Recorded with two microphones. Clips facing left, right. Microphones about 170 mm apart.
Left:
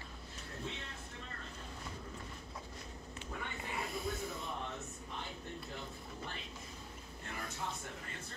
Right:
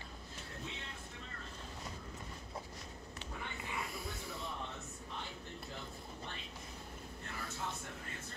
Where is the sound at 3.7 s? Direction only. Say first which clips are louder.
Left 5 dB; 25° left (ahead or behind).